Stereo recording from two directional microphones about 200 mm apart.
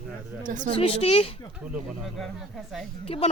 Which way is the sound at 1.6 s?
Centre (ahead or behind).